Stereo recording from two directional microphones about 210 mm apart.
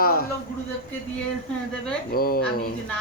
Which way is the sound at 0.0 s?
45° left (ahead or behind).